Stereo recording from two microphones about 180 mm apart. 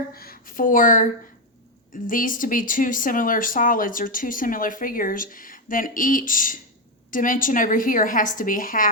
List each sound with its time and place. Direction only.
0.1 s speech: 55° left (ahead or behind)